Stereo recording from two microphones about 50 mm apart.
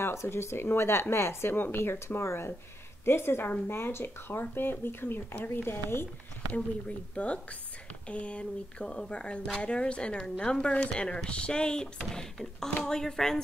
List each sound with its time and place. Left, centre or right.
0.0 s speech: left
7.2 s speech: left; by 13.4 s centre